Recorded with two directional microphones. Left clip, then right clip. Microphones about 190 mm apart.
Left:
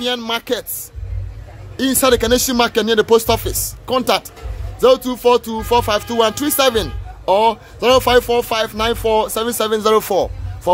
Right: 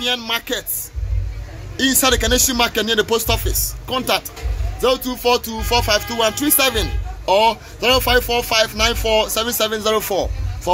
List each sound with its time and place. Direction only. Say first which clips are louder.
0.0 s speech: even; 50° left (ahead or behind)
1.9 s speech: left 3 dB; 45° left (ahead or behind)
7.2 s speech: left 1 dB; 35° left (ahead or behind)
7.8 s speech: left 3 dB; 50° left (ahead or behind)